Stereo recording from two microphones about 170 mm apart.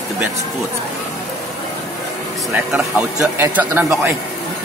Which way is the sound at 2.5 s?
10° right (ahead or behind).